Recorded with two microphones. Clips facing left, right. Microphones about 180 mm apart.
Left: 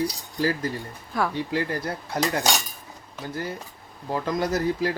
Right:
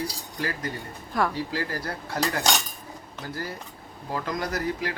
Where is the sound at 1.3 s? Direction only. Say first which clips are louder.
Left 3 dB; 20° left (ahead or behind).